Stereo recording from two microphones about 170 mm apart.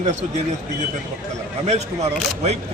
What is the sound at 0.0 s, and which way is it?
Speech, 45° right (ahead or behind).